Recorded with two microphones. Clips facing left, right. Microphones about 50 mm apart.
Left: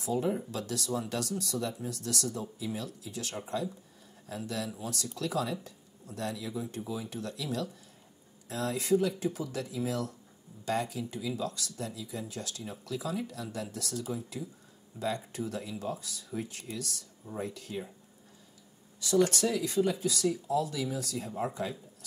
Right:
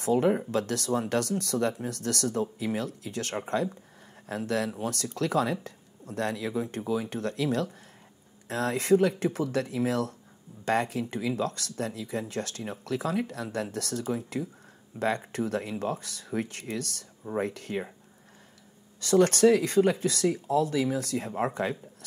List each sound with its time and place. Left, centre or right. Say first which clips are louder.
0.0 s speech: right 7 dB; right
18.9 s speech: right 5 dB; right